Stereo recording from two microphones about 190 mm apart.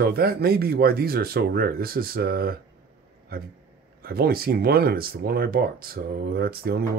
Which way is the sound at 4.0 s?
55° right (ahead or behind).